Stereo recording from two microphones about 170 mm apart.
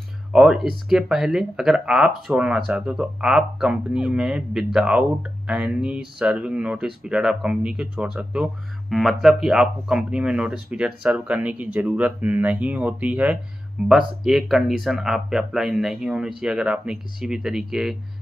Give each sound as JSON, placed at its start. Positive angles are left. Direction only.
{"t": 0.3, "sound": "speech", "side_deg": -5}